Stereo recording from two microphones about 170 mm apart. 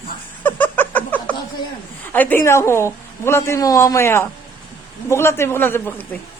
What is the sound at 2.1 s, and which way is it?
A man's voice, 10° left (ahead or behind).